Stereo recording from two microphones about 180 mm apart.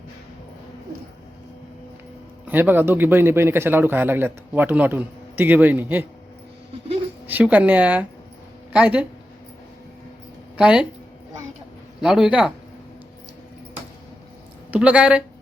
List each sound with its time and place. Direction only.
2.5 s speech: 10° right (ahead or behind)
7.3 s a man's voice: 10° right (ahead or behind)
10.6 s a man's voice: 5° right (ahead or behind)
11.9 s a man's voice: 5° right (ahead or behind)
14.7 s speech: 5° right (ahead or behind)